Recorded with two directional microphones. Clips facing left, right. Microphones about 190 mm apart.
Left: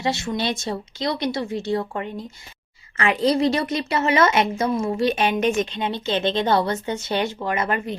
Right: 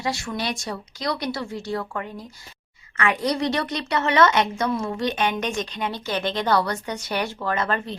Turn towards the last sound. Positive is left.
turn(degrees=20)  # may be behind; listen again after turning